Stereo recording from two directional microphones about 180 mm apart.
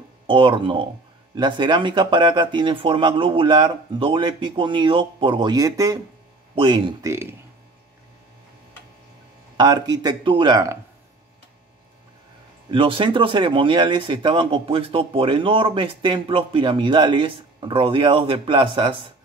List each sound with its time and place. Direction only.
0.3 s speech: 30° right (ahead or behind)
6.5 s speech: 30° right (ahead or behind)
7.1 s speech: 15° right (ahead or behind)
9.6 s speech: 25° right (ahead or behind)
12.7 s speech: 30° right (ahead or behind)